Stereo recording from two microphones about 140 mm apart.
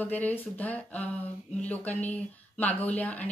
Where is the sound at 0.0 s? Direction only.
10° left (ahead or behind).